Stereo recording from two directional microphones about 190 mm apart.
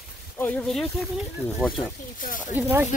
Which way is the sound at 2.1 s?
45° left (ahead or behind).